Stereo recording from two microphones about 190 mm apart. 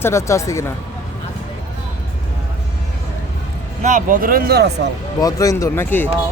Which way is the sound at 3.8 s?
40° right (ahead or behind).